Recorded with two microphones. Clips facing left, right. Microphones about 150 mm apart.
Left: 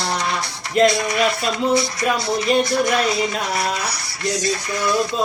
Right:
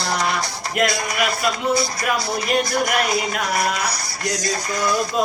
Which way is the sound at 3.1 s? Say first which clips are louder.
Left 2 dB; 15° right (ahead or behind).